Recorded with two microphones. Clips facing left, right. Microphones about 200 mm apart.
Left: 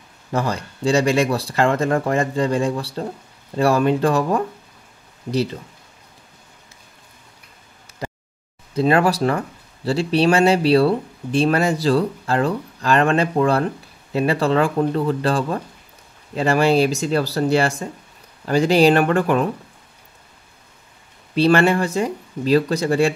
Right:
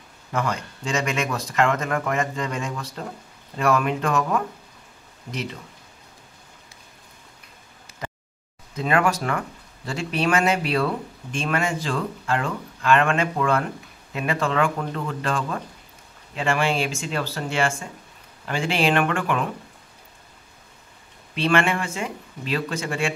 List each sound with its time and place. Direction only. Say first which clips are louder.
0.3 s speech: left 4 dB; 35° left (ahead or behind)
8.7 s speech: left 5 dB; 35° left (ahead or behind)
21.4 s speech: left 6 dB; 35° left (ahead or behind)